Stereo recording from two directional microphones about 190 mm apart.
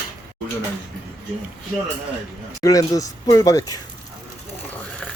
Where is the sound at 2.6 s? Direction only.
20° left (ahead or behind).